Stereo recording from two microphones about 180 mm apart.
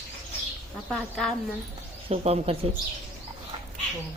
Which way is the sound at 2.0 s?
35° right (ahead or behind).